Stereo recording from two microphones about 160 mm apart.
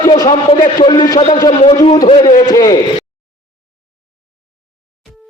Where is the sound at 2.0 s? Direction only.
35° left (ahead or behind).